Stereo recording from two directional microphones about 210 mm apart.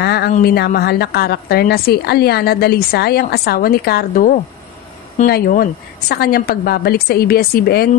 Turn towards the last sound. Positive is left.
turn(degrees=50)  # may be behind; listen again after turning